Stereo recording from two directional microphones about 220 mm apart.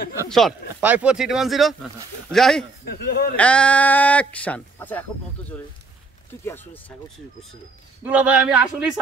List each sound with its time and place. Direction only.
0.3 s speech: centre (ahead or behind)
2.8 s a man's voice: 45° left (ahead or behind)
3.3 s speech: 5° left (ahead or behind)
6.4 s speech: 10° left (ahead or behind)
8.0 s speech: 5° right (ahead or behind)